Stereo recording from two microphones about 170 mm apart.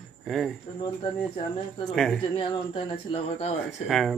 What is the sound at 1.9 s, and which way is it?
Speech, 5° left (ahead or behind).